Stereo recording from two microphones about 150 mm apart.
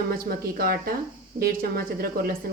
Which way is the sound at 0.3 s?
85° right.